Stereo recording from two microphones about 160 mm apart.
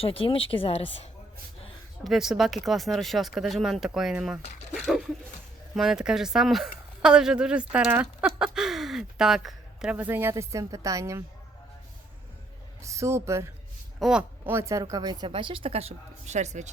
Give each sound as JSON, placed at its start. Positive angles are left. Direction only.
{"t": 0.0, "sound": "speech", "side_deg": 35}
{"t": 2.0, "sound": "a woman's voice", "side_deg": 0}
{"t": 12.8, "sound": "a woman's voice", "side_deg": -20}
{"t": 14.0, "sound": "a woman's voice", "side_deg": -5}